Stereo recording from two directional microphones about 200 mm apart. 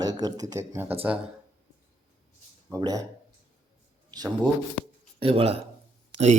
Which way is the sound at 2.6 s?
15° right (ahead or behind).